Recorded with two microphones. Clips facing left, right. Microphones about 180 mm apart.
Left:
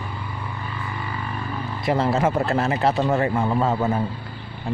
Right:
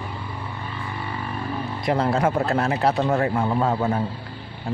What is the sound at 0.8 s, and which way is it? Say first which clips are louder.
Vehicle: right 1 dB; 30° right (ahead or behind).